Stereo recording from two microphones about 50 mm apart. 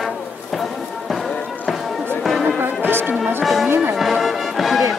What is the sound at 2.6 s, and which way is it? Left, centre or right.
Music, right.